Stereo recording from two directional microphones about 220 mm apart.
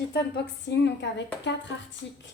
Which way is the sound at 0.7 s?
50° left (ahead or behind).